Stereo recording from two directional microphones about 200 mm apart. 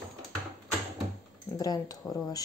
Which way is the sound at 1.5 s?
20° left (ahead or behind).